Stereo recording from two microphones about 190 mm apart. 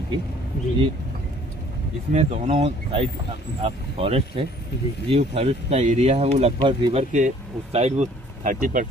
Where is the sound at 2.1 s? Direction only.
35° right (ahead or behind).